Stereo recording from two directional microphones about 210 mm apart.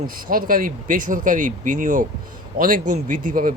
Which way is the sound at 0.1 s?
40° right (ahead or behind).